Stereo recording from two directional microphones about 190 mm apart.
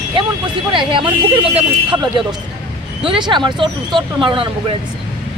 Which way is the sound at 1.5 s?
30° right (ahead or behind).